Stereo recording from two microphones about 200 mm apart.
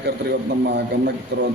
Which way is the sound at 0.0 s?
55° right (ahead or behind).